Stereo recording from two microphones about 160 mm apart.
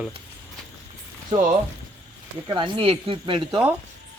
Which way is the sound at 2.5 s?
30° right (ahead or behind).